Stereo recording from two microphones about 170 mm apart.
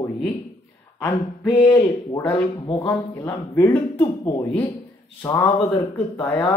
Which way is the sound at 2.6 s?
25° left (ahead or behind).